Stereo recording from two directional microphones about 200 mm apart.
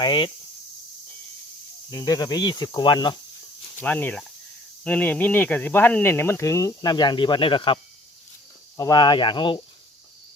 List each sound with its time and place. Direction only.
0.0 s speech: 25° left (ahead or behind)
1.9 s speech: 20° left (ahead or behind)
3.8 s speech: 10° left (ahead or behind); by 7.8 s 25° left (ahead or behind)
8.8 s speech: 20° left (ahead or behind)